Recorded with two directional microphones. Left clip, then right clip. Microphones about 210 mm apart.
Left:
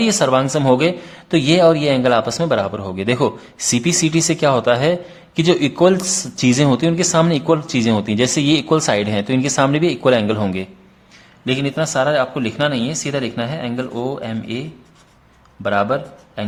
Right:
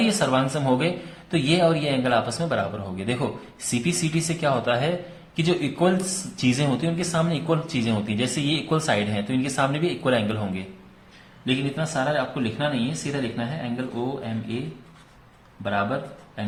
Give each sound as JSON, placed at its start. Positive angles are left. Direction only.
{"t": 0.0, "sound": "speech", "side_deg": 40}
{"t": 15.6, "sound": "a man's voice", "side_deg": 45}